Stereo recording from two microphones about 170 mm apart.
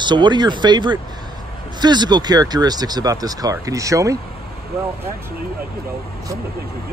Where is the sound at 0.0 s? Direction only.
25° right (ahead or behind).